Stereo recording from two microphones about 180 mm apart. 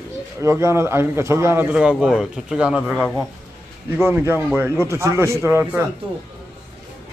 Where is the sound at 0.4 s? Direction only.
15° right (ahead or behind).